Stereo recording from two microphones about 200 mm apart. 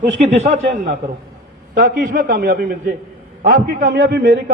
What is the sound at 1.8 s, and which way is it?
A man's voice, 40° right (ahead or behind).